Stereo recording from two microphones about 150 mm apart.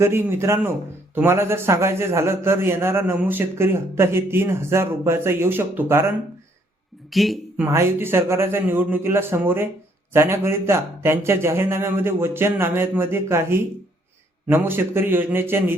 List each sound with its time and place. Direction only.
0.0 s a man's voice: 15° right (ahead or behind)
7.1 s speech: centre (ahead or behind)
7.5 s a man's voice: 15° right (ahead or behind)